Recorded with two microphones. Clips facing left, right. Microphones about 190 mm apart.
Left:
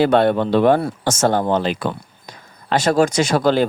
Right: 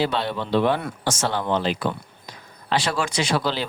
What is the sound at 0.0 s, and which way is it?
Speech, 55° left (ahead or behind).